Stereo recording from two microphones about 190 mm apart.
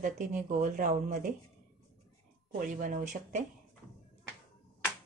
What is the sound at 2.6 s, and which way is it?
Speech, 45° right (ahead or behind).